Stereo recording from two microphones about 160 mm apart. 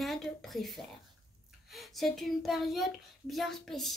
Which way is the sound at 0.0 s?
Centre (ahead or behind).